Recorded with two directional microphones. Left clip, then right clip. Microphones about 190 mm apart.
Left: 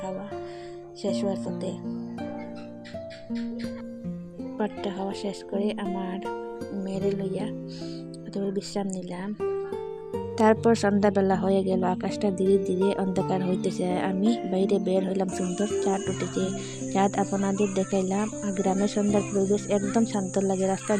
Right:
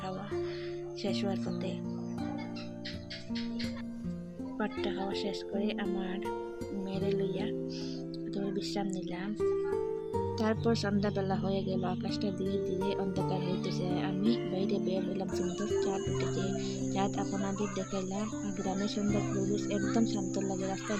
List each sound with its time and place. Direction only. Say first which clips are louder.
1.0 s music: left 7 dB; 25° left (ahead or behind)
4.5 s speech: left 4 dB; 30° left (ahead or behind)
10.3 s speech: left 14 dB; 45° left (ahead or behind)